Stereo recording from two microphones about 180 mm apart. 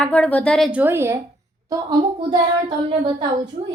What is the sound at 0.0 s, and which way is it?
Speech, 10° left (ahead or behind).